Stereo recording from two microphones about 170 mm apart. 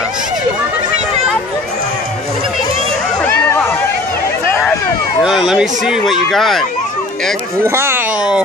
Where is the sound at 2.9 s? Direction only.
5° left (ahead or behind).